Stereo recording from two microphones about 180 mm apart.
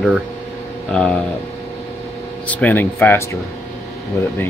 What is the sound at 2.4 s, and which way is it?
Speech, 10° left (ahead or behind).